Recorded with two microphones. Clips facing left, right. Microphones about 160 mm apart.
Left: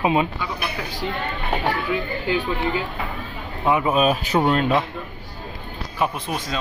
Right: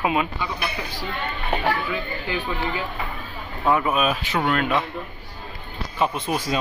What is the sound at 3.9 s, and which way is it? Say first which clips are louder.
Speech: left 4 dB; 40° left (ahead or behind).